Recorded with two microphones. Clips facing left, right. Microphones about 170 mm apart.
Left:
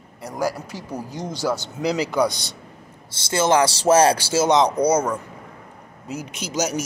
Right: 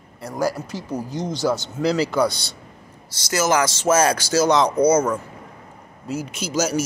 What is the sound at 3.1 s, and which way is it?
Speech, 25° left (ahead or behind).